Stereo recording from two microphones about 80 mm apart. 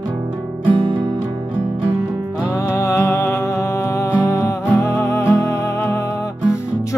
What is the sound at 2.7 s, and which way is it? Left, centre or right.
Music, left.